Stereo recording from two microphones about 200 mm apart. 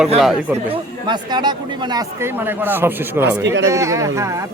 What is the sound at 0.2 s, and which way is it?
Speech, centre (ahead or behind).